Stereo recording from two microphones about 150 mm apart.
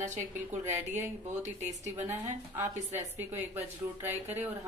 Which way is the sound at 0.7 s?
15° right (ahead or behind).